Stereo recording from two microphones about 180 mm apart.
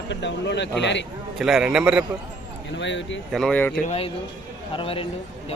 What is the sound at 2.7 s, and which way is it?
Speech, 90° left.